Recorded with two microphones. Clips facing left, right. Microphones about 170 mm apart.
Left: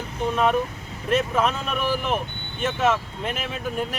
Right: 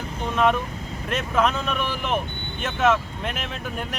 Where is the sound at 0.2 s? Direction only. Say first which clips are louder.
Even; centre (ahead or behind).